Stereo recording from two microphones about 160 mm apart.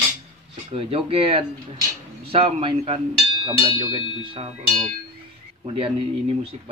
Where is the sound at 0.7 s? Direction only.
35° right (ahead or behind).